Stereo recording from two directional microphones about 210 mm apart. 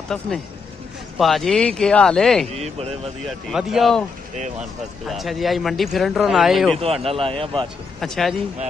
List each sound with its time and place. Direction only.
0.1 s speech: 5° left (ahead or behind)
2.5 s a man's voice: 30° right (ahead or behind)
3.3 s speech: centre (ahead or behind)
6.8 s a man's voice: 30° right (ahead or behind)
8.0 s speech: centre (ahead or behind)